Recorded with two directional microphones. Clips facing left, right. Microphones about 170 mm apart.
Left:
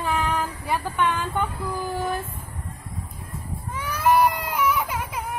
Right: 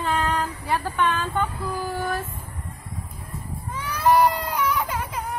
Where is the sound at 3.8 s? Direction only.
10° left (ahead or behind).